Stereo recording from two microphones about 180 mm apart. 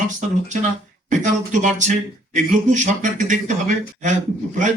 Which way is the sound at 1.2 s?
45° right (ahead or behind).